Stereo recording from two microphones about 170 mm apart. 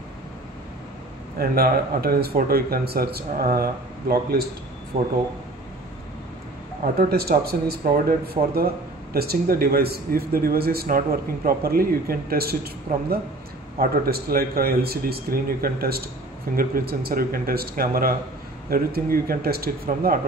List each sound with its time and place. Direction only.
1.4 s a man's voice: 60° right (ahead or behind)
6.8 s a man's voice: 65° right (ahead or behind)
8.4 s speech: 40° right (ahead or behind)
9.1 s a man's voice: 65° right (ahead or behind)